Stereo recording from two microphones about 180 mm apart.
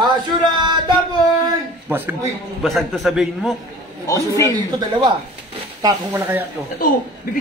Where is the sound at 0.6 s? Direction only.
25° right (ahead or behind).